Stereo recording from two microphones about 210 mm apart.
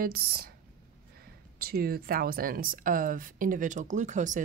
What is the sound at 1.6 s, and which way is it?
Speech, 45° right (ahead or behind).